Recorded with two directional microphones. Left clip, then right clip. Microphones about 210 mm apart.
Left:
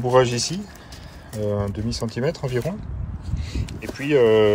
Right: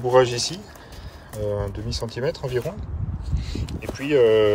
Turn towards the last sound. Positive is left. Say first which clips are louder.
# left 1 dB
turn(degrees=-5)  # may be behind; listen again after turning